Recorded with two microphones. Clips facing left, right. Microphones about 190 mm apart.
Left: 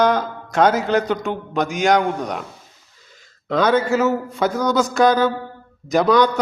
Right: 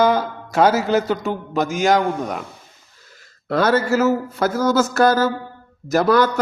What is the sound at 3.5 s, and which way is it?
A man's voice, 5° right (ahead or behind).